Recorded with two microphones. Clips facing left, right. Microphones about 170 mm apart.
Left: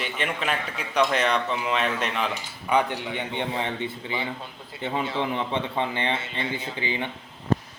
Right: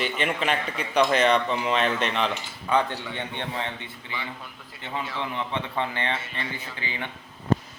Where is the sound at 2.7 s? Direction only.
15° left (ahead or behind).